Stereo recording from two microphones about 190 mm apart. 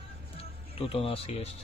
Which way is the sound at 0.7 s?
30° left (ahead or behind).